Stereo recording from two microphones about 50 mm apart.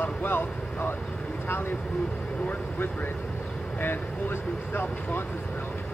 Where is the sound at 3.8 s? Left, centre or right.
Left.